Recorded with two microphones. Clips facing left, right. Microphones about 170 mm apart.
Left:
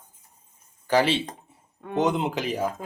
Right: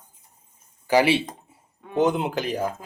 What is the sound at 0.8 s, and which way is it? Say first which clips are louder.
A man's voice: right 3 dB; 10° right (ahead or behind).